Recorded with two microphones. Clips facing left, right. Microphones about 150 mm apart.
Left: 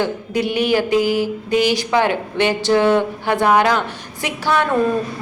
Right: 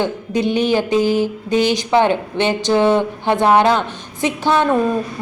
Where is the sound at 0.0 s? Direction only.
20° right (ahead or behind).